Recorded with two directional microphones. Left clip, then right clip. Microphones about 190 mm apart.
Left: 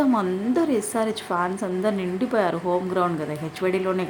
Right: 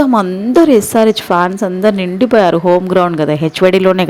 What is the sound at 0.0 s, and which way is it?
A woman's voice, 40° right (ahead or behind).